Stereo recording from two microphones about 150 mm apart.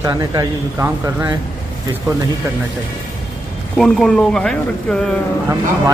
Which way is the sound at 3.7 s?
5° left (ahead or behind).